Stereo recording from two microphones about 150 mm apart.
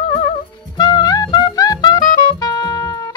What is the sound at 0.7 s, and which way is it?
Music, 25° left (ahead or behind).